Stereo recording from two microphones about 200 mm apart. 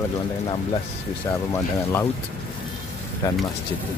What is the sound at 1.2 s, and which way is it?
Speech, 15° left (ahead or behind).